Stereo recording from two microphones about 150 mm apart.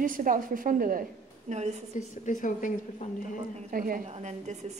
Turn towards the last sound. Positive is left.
turn(degrees=-50)  # may be behind; listen again after turning